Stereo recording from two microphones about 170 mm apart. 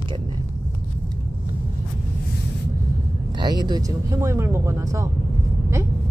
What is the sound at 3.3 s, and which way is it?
Speech, 25° right (ahead or behind).